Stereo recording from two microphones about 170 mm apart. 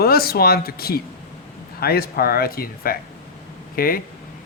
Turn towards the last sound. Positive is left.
turn(degrees=60)  # may be behind; listen again after turning